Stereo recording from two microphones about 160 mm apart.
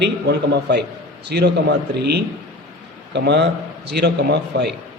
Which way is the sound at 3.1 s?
90° right.